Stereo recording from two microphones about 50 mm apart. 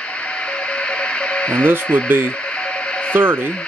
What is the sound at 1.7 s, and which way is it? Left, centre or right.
Speech, right.